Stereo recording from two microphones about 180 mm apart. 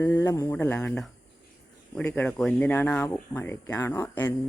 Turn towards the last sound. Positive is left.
turn(degrees=15)  # may be behind; listen again after turning